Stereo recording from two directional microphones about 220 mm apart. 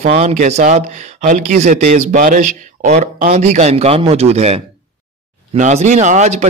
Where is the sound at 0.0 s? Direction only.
35° right (ahead or behind).